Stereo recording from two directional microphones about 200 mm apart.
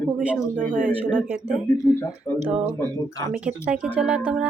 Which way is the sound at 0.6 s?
40° right (ahead or behind).